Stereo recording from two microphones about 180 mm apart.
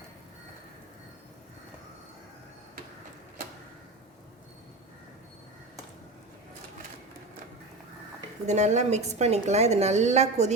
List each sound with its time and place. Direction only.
8.4 s a woman's voice: 40° right (ahead or behind)